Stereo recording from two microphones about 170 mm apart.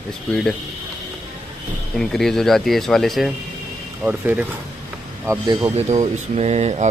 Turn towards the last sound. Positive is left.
turn(degrees=-40)  # may be behind; listen again after turning